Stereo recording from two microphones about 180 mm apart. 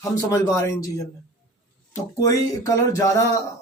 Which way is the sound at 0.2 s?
20° left (ahead or behind).